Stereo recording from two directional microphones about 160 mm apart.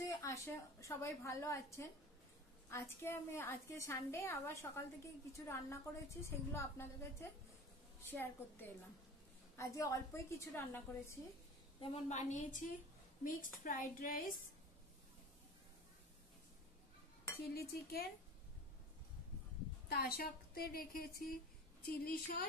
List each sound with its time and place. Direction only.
0.0 s a woman's voice: 20° left (ahead or behind)
11.8 s a woman's voice: 45° left (ahead or behind); by 14.3 s 60° left (ahead or behind)
17.6 s a woman's voice: 75° left (ahead or behind)
19.9 s a woman's voice: 70° left (ahead or behind)